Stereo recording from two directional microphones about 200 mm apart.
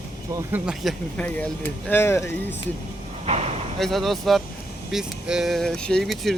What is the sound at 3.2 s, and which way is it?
Speech, 30° right (ahead or behind).